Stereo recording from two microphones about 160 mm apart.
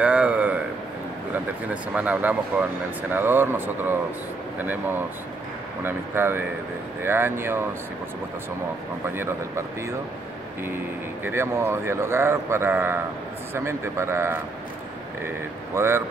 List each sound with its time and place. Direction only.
0.0 s speech: 10° right (ahead or behind)
9.0 s speech: 15° right (ahead or behind)
11.2 s speech: 15° right (ahead or behind)